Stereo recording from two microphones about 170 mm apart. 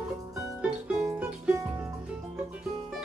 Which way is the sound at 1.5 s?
20° right (ahead or behind).